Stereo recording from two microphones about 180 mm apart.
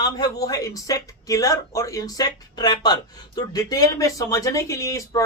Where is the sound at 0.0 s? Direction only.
20° left (ahead or behind).